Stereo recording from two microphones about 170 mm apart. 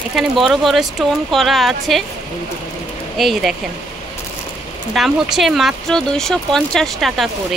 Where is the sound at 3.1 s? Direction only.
Centre (ahead or behind).